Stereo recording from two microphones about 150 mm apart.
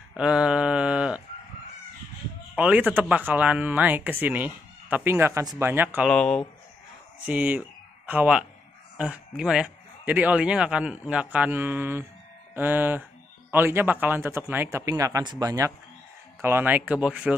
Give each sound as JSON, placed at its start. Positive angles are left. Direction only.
{"t": 0.1, "sound": "mantra", "side_deg": -5}
{"t": 2.5, "sound": "a man's voice", "side_deg": -10}
{"t": 6.0, "sound": "speech", "side_deg": 5}
{"t": 7.2, "sound": "a man's voice", "side_deg": -10}